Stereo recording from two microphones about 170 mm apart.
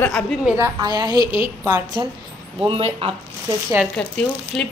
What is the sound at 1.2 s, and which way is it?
Speech, 30° left (ahead or behind).